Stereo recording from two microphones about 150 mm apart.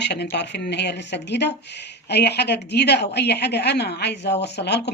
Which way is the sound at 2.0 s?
90° left.